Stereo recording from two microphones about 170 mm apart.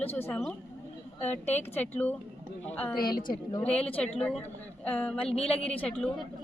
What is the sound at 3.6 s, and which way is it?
Speech, 5° left (ahead or behind).